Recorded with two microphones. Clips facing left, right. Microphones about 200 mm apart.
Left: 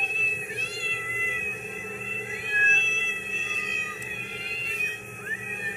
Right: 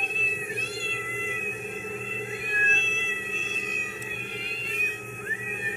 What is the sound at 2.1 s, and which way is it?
Whale vocalization, 45° right (ahead or behind).